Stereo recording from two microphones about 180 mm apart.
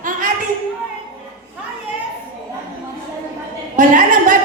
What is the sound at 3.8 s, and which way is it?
Speech, 45° right (ahead or behind).